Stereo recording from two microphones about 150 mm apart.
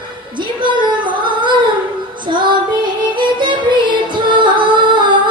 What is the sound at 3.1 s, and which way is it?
Music, 30° right (ahead or behind).